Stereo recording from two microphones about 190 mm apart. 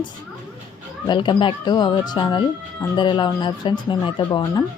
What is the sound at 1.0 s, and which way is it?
A woman's voice, 25° left (ahead or behind).